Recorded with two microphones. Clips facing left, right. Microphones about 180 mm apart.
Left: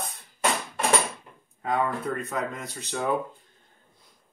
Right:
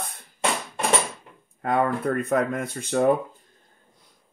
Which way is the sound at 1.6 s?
60° right (ahead or behind).